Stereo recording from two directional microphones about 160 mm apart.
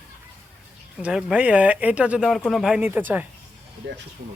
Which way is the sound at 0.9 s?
5° right (ahead or behind).